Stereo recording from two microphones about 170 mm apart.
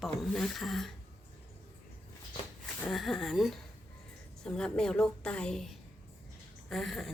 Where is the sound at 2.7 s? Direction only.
Centre (ahead or behind).